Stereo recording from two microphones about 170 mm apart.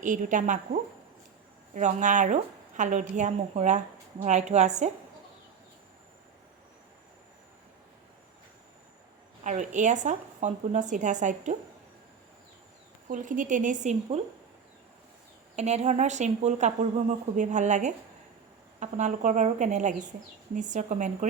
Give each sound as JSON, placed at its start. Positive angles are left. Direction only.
{"t": 0.0, "sound": "a woman's voice", "side_deg": -50}
{"t": 9.4, "sound": "a woman's voice", "side_deg": -45}
{"t": 13.1, "sound": "a woman's voice", "side_deg": -50}
{"t": 15.5, "sound": "a woman's voice", "side_deg": -40}